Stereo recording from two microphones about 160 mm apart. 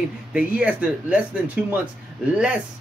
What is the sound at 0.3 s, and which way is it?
Speech, 5° right (ahead or behind).